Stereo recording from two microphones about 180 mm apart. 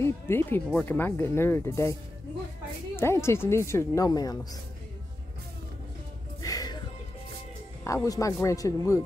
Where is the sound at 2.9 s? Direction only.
15° left (ahead or behind).